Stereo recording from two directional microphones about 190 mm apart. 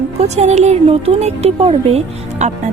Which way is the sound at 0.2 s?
35° right (ahead or behind).